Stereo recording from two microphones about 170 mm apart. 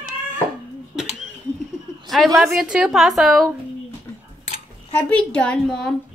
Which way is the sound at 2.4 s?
Centre (ahead or behind).